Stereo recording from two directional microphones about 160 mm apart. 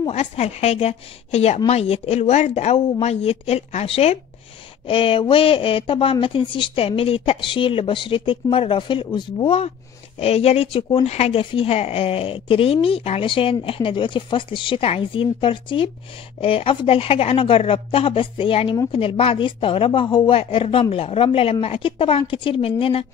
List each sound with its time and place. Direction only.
0.0 s speech: 40° left (ahead or behind)